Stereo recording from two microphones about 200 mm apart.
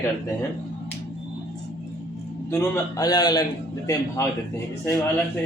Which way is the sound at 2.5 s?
15° left (ahead or behind).